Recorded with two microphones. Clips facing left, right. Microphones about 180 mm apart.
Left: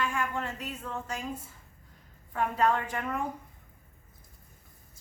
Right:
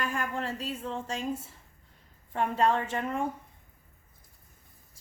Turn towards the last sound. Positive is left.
turn(degrees=-25)  # may be behind; listen again after turning